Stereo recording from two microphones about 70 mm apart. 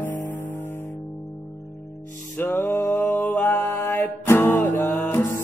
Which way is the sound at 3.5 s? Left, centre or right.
Left.